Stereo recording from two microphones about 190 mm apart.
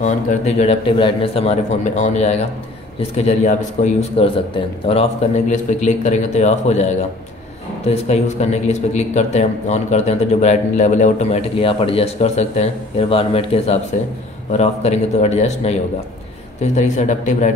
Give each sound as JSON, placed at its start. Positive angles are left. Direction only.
{"t": 0.0, "sound": "speech", "side_deg": 40}